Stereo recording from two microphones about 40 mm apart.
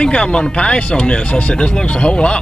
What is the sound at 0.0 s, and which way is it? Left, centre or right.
Speech, left.